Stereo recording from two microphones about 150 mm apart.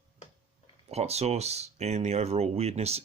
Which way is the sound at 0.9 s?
45° right (ahead or behind).